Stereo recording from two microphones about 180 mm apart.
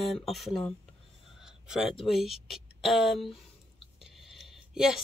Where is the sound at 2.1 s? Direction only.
Centre (ahead or behind).